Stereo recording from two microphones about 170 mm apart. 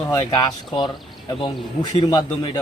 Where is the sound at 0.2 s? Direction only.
25° left (ahead or behind).